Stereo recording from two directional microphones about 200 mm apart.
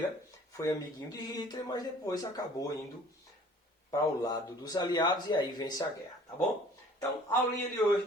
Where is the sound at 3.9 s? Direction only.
20° left (ahead or behind).